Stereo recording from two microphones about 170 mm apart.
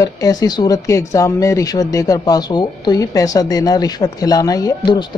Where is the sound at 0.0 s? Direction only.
20° left (ahead or behind).